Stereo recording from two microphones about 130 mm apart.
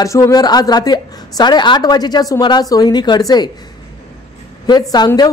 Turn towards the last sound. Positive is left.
turn(degrees=30)  # may be behind; listen again after turning